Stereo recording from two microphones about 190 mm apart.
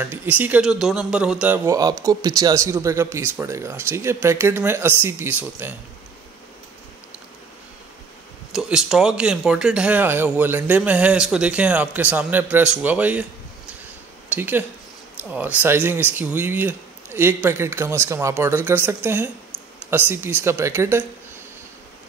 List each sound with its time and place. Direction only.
0.0 s speech: 10° right (ahead or behind)
2.0 s speech: 20° right (ahead or behind)
8.5 s speech: 5° right (ahead or behind)
14.3 s speech: 10° right (ahead or behind)